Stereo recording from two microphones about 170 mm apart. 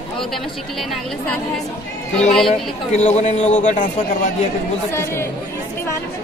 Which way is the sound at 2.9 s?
40° left (ahead or behind).